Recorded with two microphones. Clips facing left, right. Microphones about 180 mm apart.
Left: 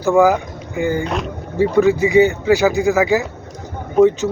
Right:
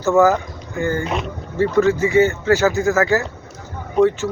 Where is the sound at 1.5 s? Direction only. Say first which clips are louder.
Left 2 dB; 10° left (ahead or behind).